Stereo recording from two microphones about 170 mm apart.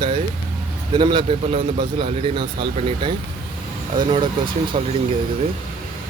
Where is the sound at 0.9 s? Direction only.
30° right (ahead or behind).